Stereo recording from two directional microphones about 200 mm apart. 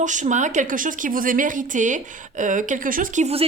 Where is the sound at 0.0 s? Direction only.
40° right (ahead or behind).